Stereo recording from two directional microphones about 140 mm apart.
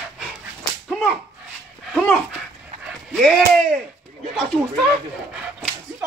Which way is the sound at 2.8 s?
Centre (ahead or behind).